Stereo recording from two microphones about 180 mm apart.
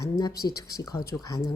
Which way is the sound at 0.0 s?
20° left (ahead or behind).